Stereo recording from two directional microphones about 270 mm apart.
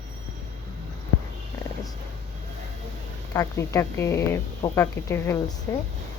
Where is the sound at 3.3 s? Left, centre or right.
Centre.